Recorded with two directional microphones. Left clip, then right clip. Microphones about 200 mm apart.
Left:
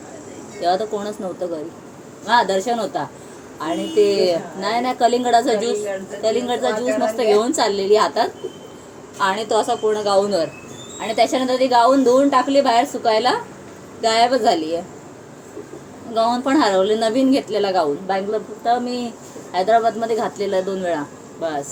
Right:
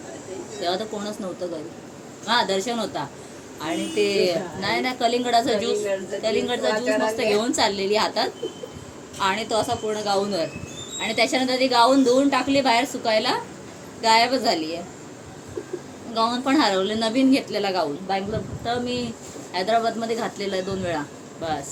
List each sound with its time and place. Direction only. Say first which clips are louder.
0.6 s a woman's voice: left 7 dB; centre (ahead or behind)
16.1 s a woman's voice: left 4 dB; 5° right (ahead or behind)